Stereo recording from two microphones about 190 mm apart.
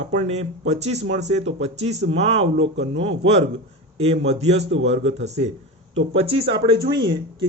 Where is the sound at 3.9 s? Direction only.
30° right (ahead or behind).